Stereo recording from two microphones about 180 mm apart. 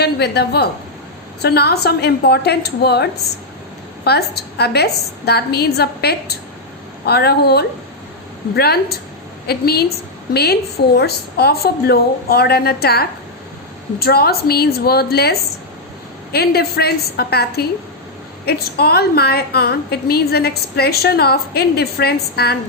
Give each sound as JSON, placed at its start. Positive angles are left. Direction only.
{"t": 0.0, "sound": "a woman's voice", "side_deg": 65}